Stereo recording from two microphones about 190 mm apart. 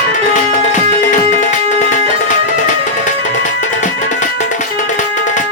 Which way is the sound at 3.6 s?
40° left (ahead or behind).